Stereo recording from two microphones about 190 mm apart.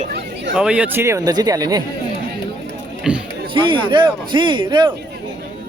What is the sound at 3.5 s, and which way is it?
Speech, 25° right (ahead or behind).